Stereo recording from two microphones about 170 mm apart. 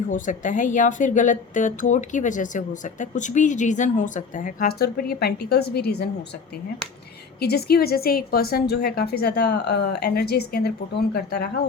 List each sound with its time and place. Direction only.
0.1 s a woman's voice: 50° left (ahead or behind); by 6.1 s 70° left (ahead or behind)
7.3 s a woman's voice: 70° left (ahead or behind)